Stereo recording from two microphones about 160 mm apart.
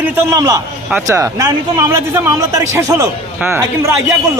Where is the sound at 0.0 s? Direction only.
20° right (ahead or behind).